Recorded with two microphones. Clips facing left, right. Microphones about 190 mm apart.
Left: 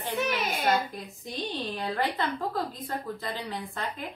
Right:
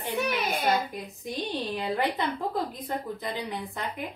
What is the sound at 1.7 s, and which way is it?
A woman's voice, 15° right (ahead or behind).